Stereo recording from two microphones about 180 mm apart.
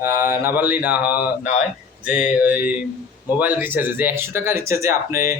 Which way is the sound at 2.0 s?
45° left (ahead or behind).